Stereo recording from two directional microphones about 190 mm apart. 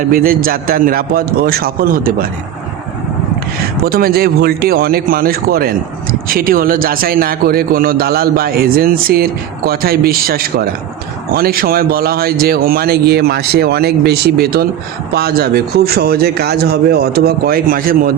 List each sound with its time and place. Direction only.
0.1 s a man's voice: 50° right (ahead or behind)
3.8 s a man's voice: 50° right (ahead or behind)